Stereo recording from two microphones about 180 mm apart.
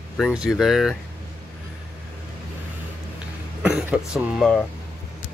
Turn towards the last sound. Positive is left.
turn(degrees=0)  # may be behind; listen again after turning